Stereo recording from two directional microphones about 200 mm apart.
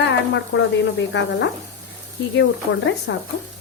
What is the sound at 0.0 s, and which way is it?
Speech, 65° left (ahead or behind).